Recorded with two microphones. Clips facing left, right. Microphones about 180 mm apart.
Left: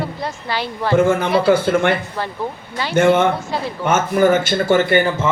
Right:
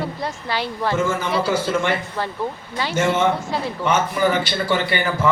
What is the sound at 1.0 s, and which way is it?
Speech, 60° left (ahead or behind).